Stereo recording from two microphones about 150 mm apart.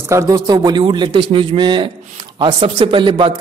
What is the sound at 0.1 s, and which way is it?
A man's voice, 20° right (ahead or behind).